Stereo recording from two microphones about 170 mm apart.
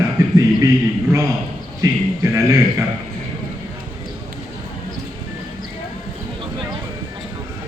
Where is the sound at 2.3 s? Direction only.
15° right (ahead or behind).